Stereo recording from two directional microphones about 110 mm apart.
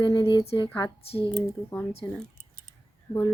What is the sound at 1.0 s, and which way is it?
Speech, 60° left (ahead or behind).